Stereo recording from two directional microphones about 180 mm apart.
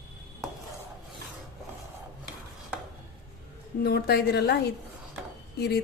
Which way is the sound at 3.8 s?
60° left (ahead or behind).